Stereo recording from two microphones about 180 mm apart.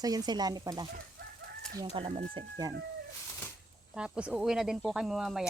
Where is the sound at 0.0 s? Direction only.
20° right (ahead or behind).